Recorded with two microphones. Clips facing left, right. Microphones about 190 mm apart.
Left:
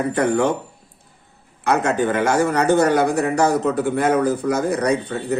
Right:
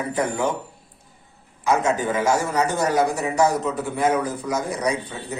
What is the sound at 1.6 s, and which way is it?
Speech, 65° left (ahead or behind).